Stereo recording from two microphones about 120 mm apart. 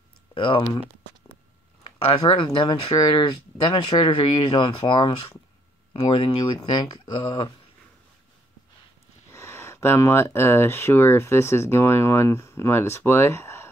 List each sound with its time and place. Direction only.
0.3 s speech: 45° left (ahead or behind)
2.0 s speech: 50° left (ahead or behind)
9.3 s speech: 25° left (ahead or behind)